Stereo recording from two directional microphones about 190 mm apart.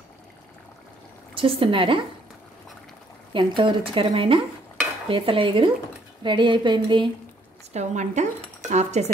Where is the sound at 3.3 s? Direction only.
25° right (ahead or behind).